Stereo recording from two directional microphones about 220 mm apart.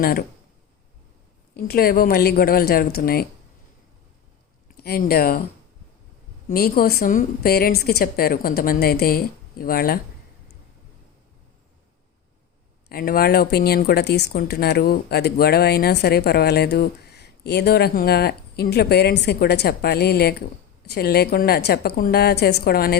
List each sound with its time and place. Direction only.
0.0 s speech: 45° left (ahead or behind)
1.5 s speech: 45° left (ahead or behind)
4.7 s speech: 40° left (ahead or behind)
6.5 s speech: 45° left (ahead or behind)
12.9 s speech: 40° left (ahead or behind)